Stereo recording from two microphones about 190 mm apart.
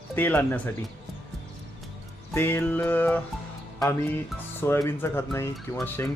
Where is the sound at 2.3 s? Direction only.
10° left (ahead or behind).